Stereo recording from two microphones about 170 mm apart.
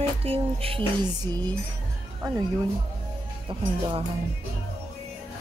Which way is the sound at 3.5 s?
30° right (ahead or behind).